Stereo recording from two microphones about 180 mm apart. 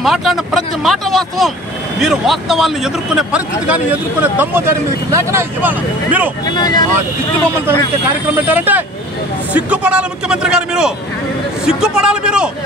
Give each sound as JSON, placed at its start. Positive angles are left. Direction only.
{"t": 0.0, "sound": "speech", "side_deg": 0}
{"t": 6.5, "sound": "speech", "side_deg": 25}
{"t": 8.4, "sound": "speech", "side_deg": -10}